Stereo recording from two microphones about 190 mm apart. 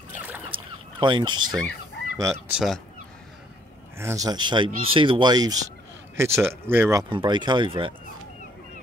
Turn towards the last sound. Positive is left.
turn(degrees=-25)  # may be behind; listen again after turning